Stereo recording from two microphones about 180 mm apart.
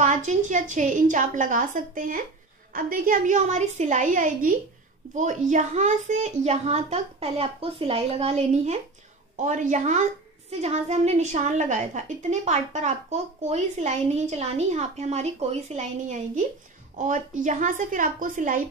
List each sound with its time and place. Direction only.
0.0 s a woman's voice: 45° right (ahead or behind)